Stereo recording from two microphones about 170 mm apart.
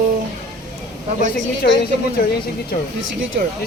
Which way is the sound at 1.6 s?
60° left (ahead or behind).